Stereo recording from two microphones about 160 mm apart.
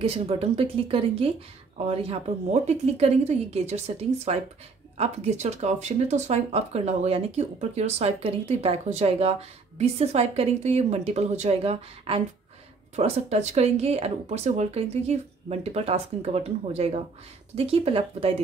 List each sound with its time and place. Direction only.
0.0 s speech: 35° right (ahead or behind)